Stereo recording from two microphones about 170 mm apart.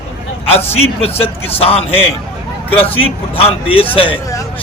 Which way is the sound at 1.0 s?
35° left (ahead or behind).